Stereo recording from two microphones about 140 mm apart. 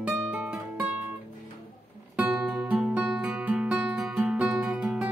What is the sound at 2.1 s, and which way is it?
Music, 10° right (ahead or behind).